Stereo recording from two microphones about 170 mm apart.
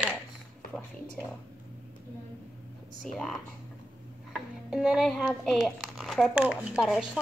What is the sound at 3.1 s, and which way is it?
Speech, centre (ahead or behind).